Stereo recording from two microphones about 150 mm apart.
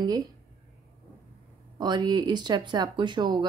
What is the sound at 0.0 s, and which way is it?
Speech, 25° right (ahead or behind).